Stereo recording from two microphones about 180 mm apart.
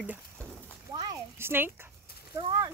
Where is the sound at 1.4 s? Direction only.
10° right (ahead or behind).